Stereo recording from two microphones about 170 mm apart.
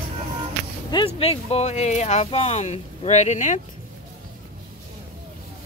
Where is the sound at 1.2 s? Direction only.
35° left (ahead or behind).